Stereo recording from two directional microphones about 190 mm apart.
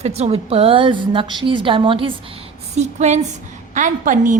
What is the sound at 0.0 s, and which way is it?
A woman's voice, 35° right (ahead or behind).